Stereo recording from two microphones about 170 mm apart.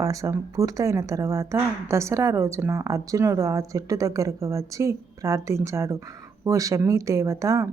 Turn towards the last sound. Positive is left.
turn(degrees=-20)  # may be behind; listen again after turning